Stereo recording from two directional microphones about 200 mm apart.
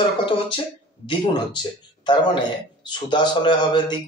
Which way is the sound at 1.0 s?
25° left (ahead or behind).